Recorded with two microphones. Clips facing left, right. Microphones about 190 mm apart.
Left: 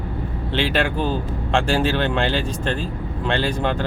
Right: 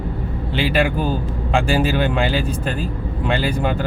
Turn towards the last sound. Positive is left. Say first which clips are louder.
# right 1 dB
turn(degrees=-10)  # may be behind; listen again after turning